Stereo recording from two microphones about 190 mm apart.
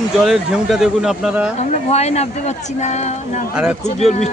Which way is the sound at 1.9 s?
35° left (ahead or behind).